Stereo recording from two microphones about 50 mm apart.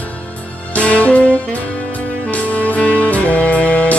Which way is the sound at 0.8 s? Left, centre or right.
Left.